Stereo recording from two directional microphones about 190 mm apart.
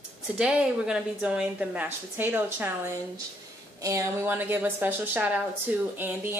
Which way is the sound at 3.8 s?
15° right (ahead or behind).